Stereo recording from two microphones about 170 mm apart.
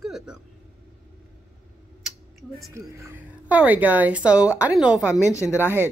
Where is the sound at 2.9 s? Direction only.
15° right (ahead or behind).